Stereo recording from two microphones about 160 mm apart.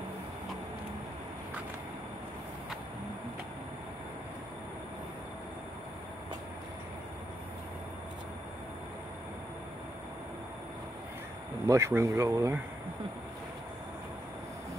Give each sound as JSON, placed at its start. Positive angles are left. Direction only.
{"t": 11.6, "sound": "speech", "side_deg": -20}